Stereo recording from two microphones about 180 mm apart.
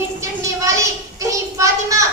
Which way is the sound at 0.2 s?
15° right (ahead or behind).